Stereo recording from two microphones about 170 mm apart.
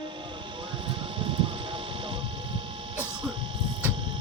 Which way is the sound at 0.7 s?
30° right (ahead or behind).